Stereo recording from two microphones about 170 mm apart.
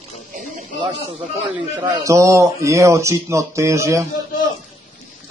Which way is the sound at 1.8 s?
20° right (ahead or behind).